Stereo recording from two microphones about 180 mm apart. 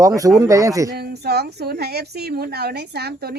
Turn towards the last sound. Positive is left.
turn(degrees=-60)  # may be behind; listen again after turning